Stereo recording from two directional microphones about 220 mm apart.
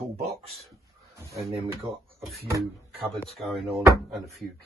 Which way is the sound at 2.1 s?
Centre (ahead or behind).